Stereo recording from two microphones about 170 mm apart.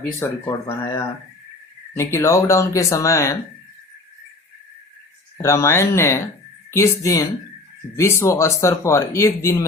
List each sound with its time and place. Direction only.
0.2 s speech: 20° left (ahead or behind)
5.4 s speech: 15° left (ahead or behind)